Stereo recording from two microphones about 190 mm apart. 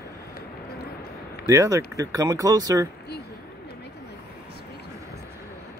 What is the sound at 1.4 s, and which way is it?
Speech, 15° right (ahead or behind).